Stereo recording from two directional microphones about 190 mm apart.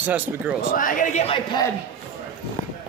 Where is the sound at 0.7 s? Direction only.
45° left (ahead or behind).